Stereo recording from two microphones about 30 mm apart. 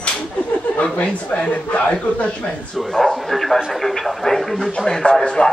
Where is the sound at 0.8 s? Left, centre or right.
Left.